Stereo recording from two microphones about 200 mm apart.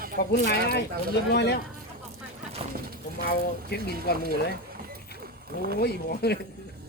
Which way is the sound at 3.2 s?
55° left (ahead or behind).